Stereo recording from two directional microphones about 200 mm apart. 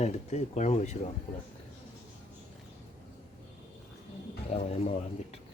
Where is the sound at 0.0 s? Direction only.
35° left (ahead or behind).